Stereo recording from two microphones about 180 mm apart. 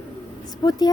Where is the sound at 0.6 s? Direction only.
25° left (ahead or behind).